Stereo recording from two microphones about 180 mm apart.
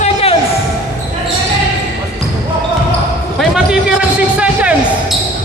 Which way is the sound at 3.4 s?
Centre (ahead or behind).